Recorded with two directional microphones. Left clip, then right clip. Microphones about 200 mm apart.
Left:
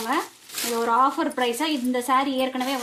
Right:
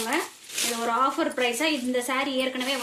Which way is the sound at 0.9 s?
55° left (ahead or behind).